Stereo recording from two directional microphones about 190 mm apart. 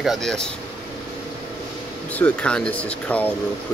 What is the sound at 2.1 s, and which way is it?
Speech, 5° left (ahead or behind).